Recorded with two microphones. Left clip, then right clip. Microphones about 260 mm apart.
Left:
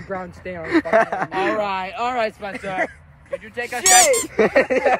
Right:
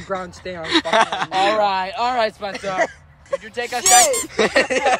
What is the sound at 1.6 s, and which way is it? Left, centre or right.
Speech, right.